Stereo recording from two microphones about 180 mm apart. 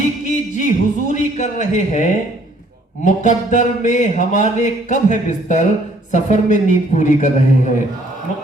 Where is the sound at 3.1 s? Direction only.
45° left (ahead or behind).